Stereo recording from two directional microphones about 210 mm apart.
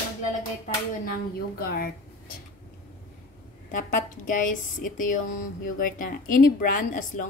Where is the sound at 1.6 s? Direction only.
45° left (ahead or behind).